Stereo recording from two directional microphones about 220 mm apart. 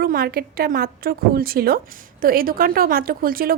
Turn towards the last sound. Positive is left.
turn(degrees=-40)  # may be behind; listen again after turning